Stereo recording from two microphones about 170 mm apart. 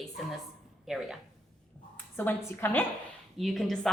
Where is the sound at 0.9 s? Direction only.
Centre (ahead or behind).